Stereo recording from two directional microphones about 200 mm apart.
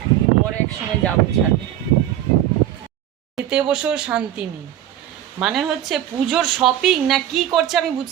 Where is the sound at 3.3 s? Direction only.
5° right (ahead or behind).